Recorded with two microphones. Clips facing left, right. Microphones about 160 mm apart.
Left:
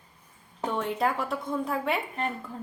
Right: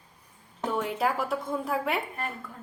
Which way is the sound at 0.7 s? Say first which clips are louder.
Even; 5° right (ahead or behind).